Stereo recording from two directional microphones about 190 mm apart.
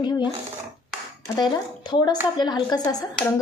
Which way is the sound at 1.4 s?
20° left (ahead or behind).